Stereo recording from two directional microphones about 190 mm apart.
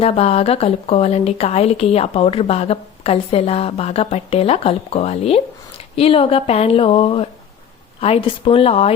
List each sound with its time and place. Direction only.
0.0 s speech: 30° left (ahead or behind)